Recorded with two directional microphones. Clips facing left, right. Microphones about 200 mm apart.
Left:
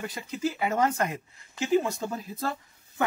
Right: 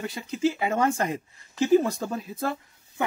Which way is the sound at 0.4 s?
25° right (ahead or behind).